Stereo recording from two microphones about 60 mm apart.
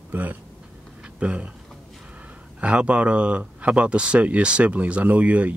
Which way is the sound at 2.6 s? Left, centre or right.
Right.